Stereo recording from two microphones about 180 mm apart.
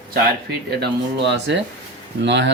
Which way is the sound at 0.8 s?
75° right (ahead or behind).